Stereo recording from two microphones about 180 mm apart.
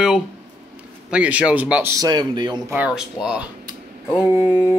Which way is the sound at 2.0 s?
25° right (ahead or behind).